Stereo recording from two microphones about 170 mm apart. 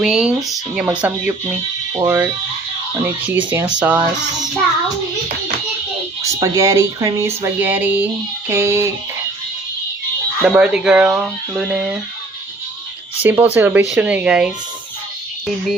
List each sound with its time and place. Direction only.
0.0 s speech: 5° right (ahead or behind)
1.9 s speech: 20° right (ahead or behind)
3.0 s speech: 10° right (ahead or behind)
6.4 s speech: 20° right (ahead or behind)
10.5 s speech: 5° right (ahead or behind)
13.2 s speech: 10° right (ahead or behind)